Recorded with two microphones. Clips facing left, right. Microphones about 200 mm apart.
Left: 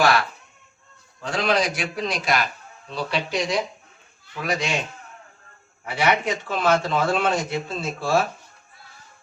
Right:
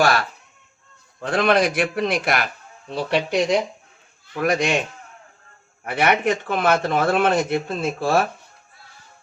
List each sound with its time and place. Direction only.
0.0 s speech: 45° right (ahead or behind)
1.2 s speech: 55° right (ahead or behind)
5.8 s speech: 55° right (ahead or behind)